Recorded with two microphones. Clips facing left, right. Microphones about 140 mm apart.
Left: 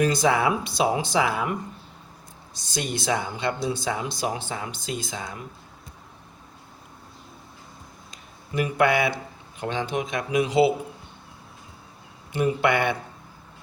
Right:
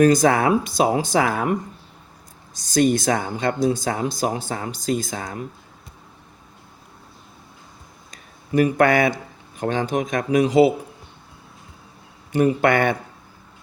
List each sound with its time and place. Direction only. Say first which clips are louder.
0.0 s speech: right 6 dB; 45° right (ahead or behind)
2.6 s speech: right 12 dB; 45° right (ahead or behind)
8.1 s a sound: right 8 dB; 45° right (ahead or behind)
9.6 s speech: right 5 dB; 45° right (ahead or behind)
12.3 s speech: right 5 dB; 45° right (ahead or behind)